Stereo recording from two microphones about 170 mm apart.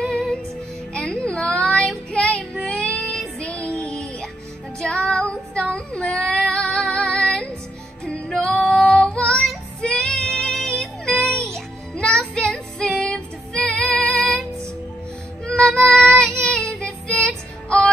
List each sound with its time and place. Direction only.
0.0 s music: centre (ahead or behind)
0.9 s child singing: centre (ahead or behind)
11.4 s music: 5° left (ahead or behind)